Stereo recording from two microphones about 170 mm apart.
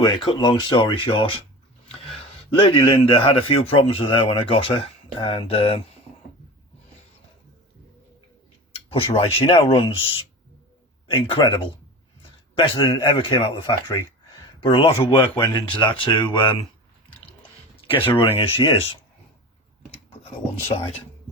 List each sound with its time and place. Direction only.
0.0 s speech: 25° left (ahead or behind)
1.9 s a sound: 35° left (ahead or behind)
2.6 s speech: 30° left (ahead or behind)
8.7 s speech: 30° left (ahead or behind)
14.6 s speech: 30° left (ahead or behind)
15.2 s speech: 15° left (ahead or behind)
15.6 s speech: 30° left (ahead or behind)
17.8 s speech: 30° left (ahead or behind)